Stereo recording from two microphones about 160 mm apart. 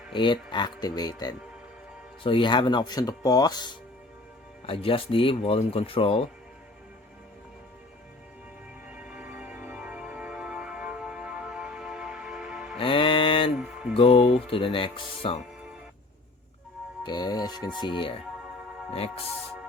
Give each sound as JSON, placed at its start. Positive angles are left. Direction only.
{"t": 0.1, "sound": "speech", "side_deg": 30}
{"t": 8.9, "sound": "music", "side_deg": -10}
{"t": 12.8, "sound": "music", "side_deg": 35}
{"t": 13.6, "sound": "mantra", "side_deg": -5}
{"t": 13.9, "sound": "speech", "side_deg": 35}
{"t": 17.0, "sound": "speech", "side_deg": 25}